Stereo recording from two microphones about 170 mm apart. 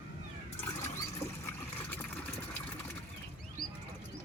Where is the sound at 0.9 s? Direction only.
15° left (ahead or behind).